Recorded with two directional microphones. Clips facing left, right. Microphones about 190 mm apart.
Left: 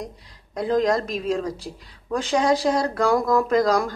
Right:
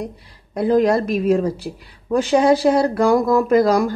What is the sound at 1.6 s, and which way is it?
Speech, 10° right (ahead or behind).